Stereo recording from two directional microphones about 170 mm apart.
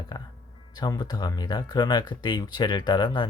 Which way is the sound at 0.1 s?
20° left (ahead or behind).